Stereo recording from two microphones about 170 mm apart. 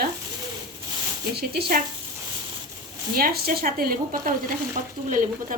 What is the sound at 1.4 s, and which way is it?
Speech, 65° right (ahead or behind).